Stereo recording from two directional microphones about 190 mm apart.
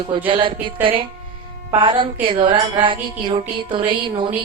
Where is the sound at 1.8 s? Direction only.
25° right (ahead or behind).